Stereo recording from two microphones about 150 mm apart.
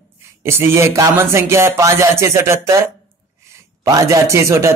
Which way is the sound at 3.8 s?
20° right (ahead or behind).